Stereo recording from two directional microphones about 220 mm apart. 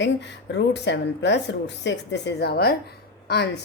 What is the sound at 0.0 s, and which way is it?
A woman's voice, 50° left (ahead or behind).